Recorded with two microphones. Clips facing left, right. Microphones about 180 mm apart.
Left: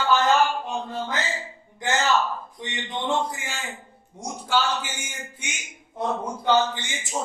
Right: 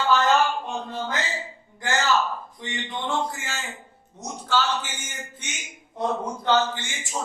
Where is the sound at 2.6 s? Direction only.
20° left (ahead or behind).